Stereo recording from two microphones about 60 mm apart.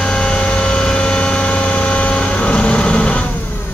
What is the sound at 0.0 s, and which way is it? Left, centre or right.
Vehicle, centre.